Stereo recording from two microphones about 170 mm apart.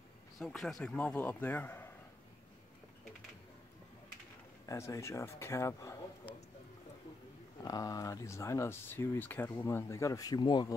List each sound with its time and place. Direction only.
0.4 s speech: centre (ahead or behind)
4.6 s speech: 15° left (ahead or behind)
7.6 s speech: 20° left (ahead or behind)